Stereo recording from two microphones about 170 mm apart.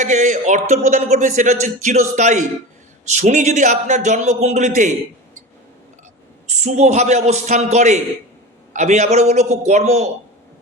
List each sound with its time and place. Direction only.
0.0 s a man's voice: 45° right (ahead or behind)
6.5 s a man's voice: 40° right (ahead or behind)